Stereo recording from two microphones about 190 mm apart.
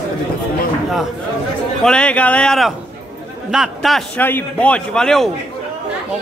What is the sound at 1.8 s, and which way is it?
A man's voice, 5° left (ahead or behind).